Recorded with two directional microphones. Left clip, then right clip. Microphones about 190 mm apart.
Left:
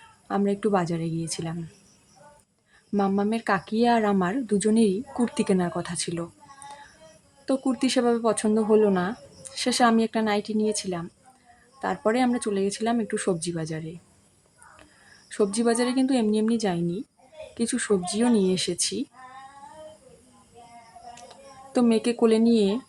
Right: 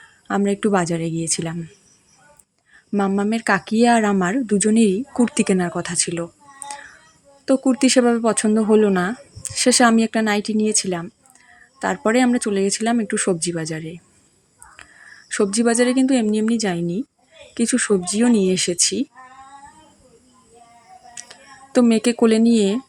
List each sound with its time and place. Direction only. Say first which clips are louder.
0.3 s speech: right 5 dB; 20° right (ahead or behind)
2.9 s speech: right 4 dB; 15° right (ahead or behind)
7.4 s speech: right 8 dB; 20° right (ahead or behind)
15.3 s speech: right 5 dB; 15° right (ahead or behind)
21.2 s speech: right 4 dB; 15° right (ahead or behind)